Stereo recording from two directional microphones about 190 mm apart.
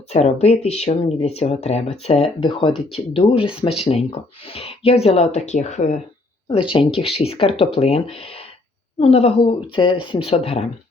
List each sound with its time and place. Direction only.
0.1 s speech: 35° left (ahead or behind)
6.5 s speech: 30° left (ahead or behind)